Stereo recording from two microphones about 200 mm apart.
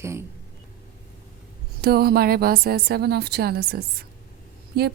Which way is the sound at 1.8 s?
50° right (ahead or behind).